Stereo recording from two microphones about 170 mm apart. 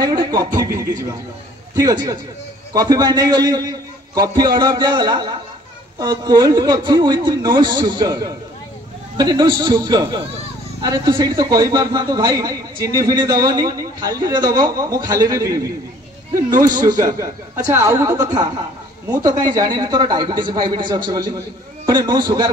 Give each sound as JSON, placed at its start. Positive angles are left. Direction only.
{"t": 0.0, "sound": "speech", "side_deg": -25}